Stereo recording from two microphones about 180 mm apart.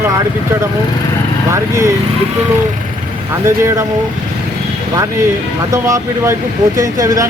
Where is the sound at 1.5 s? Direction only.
15° right (ahead or behind).